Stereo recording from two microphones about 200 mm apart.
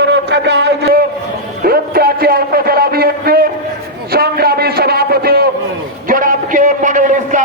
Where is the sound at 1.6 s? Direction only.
50° right (ahead or behind).